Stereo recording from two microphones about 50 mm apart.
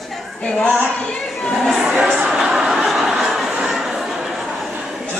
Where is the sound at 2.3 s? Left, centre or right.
Centre.